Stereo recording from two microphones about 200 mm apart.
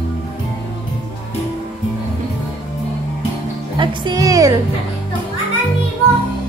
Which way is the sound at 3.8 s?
25° right (ahead or behind).